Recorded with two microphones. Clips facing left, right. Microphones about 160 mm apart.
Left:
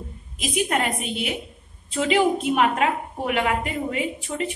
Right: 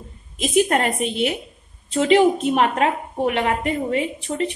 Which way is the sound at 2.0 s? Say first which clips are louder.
Right 5 dB; 35° right (ahead or behind).